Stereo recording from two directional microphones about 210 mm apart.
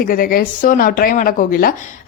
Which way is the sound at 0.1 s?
45° left (ahead or behind).